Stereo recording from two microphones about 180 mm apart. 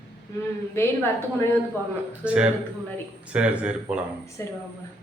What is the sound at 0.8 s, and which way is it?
Speech, 15° left (ahead or behind).